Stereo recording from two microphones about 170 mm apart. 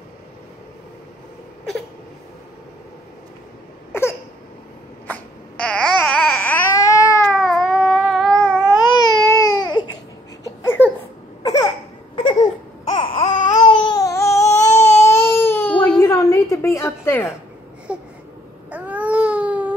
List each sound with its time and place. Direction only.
5.0 s babbling: 5° left (ahead or behind)
7.2 s cat: 5° left (ahead or behind)
8.0 s a sound: centre (ahead or behind)
8.7 s baby cry: 25° left (ahead or behind)
10.4 s a sound: 15° left (ahead or behind)
12.9 s baby cry: 30° left (ahead or behind); by 16.0 s 10° left (ahead or behind)
16.0 s a sound: 20° left (ahead or behind)
17.9 s babbling: 5° right (ahead or behind)
18.7 s baby cry: 10° right (ahead or behind)